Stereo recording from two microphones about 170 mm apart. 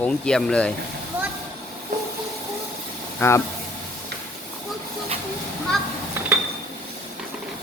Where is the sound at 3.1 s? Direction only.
15° left (ahead or behind).